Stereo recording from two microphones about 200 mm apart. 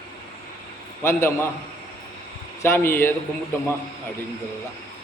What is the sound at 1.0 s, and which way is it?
Speech, 15° left (ahead or behind).